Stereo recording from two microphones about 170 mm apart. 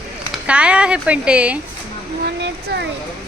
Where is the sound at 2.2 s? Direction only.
85° right.